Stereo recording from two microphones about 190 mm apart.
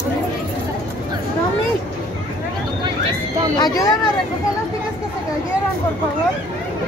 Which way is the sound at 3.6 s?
20° left (ahead or behind).